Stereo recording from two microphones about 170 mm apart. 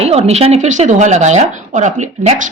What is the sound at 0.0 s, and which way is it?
Speech, 40° right (ahead or behind).